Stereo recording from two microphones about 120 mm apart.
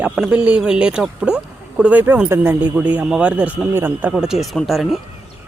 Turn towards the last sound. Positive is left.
turn(degrees=0)  # may be behind; listen again after turning